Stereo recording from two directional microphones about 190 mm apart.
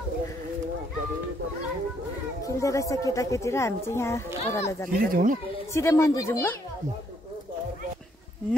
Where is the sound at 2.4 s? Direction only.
15° left (ahead or behind).